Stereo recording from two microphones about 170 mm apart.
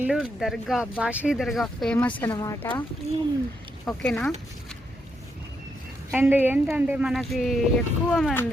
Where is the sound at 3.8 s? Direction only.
5° left (ahead or behind).